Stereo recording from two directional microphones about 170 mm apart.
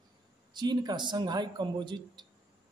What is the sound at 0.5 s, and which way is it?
A man's voice, 25° right (ahead or behind).